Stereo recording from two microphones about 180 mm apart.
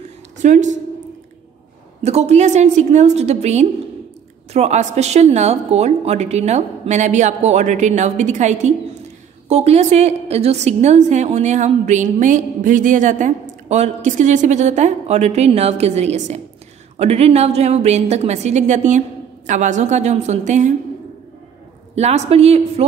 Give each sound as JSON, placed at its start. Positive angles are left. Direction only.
{"t": 0.4, "sound": "a woman's voice", "side_deg": -45}
{"t": 2.0, "sound": "a woman's voice", "side_deg": -35}
{"t": 21.9, "sound": "a woman's voice", "side_deg": -40}